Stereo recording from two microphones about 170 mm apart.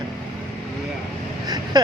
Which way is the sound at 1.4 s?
20° right (ahead or behind).